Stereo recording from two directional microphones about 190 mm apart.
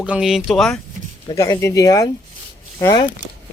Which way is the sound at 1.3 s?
15° left (ahead or behind).